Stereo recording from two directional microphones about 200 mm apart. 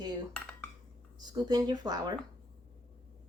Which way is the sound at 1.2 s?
20° right (ahead or behind).